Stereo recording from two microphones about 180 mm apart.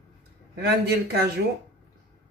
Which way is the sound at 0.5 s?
65° right (ahead or behind).